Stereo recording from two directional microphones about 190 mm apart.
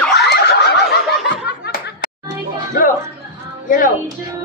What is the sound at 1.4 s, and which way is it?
Snicker, 60° left (ahead or behind).